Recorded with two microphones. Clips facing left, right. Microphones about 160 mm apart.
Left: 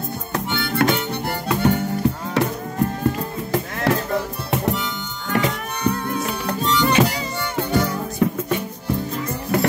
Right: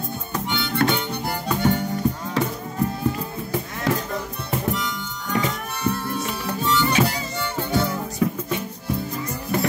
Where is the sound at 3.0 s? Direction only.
70° left (ahead or behind).